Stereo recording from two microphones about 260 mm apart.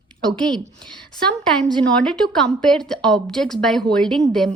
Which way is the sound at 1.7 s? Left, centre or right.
Centre.